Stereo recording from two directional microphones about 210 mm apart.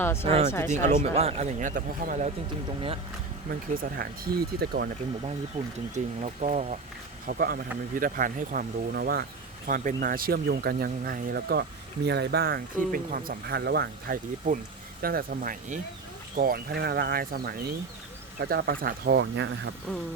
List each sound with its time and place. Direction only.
0.0 s speech: 10° left (ahead or behind)
0.3 s speech: 30° right (ahead or behind)
3.8 s speech: 45° right (ahead or behind)
5.6 s speech: 35° right (ahead or behind)
7.3 s speech: 45° right (ahead or behind)